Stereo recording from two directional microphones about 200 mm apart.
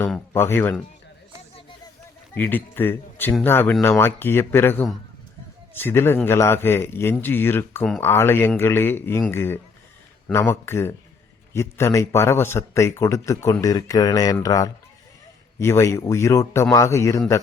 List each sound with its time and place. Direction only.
0.1 s speech: 10° left (ahead or behind)
2.3 s speech: 10° left (ahead or behind)